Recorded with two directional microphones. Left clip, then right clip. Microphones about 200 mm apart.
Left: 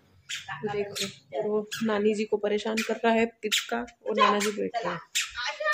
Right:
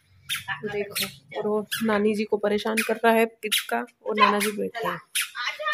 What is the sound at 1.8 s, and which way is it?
Speech, 30° right (ahead or behind).